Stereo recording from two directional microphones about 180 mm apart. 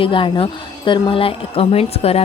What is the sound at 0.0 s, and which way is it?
A woman's voice, 30° left (ahead or behind).